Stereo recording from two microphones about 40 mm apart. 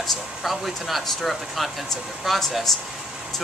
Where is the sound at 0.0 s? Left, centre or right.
Centre.